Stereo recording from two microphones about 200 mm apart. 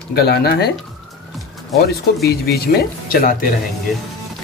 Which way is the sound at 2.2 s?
50° left (ahead or behind).